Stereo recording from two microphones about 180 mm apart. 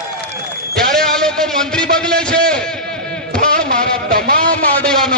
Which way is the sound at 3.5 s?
50° right (ahead or behind).